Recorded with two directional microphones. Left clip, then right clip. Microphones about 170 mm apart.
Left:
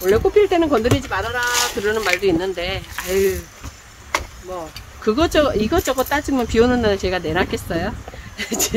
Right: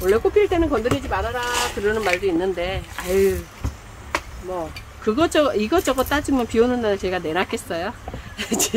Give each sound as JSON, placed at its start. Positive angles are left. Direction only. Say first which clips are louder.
{"t": 0.0, "sound": "speech", "louder": "left 2 dB", "side_deg": 10}
{"t": 0.6, "sound": "speech", "louder": "left 3 dB", "side_deg": 40}
{"t": 5.0, "sound": "speech", "louder": "left 2 dB", "side_deg": 10}